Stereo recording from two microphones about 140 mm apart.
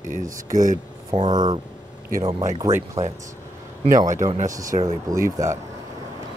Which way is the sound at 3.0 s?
50° right (ahead or behind).